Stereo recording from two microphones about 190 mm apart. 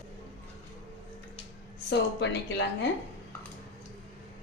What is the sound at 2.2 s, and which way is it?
Speech, 65° left (ahead or behind).